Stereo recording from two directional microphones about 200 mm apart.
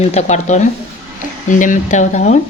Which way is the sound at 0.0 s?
35° left (ahead or behind).